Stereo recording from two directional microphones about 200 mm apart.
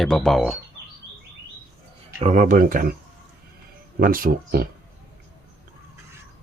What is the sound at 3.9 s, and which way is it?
Speech, 45° right (ahead or behind).